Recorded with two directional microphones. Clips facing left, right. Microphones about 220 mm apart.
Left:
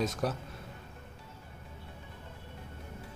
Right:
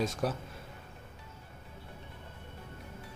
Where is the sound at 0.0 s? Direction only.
Centre (ahead or behind).